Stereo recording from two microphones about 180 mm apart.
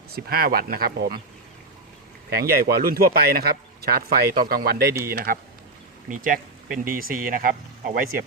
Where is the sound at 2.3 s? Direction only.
55° right (ahead or behind).